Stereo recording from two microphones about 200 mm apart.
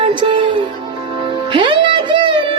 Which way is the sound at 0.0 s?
25° right (ahead or behind).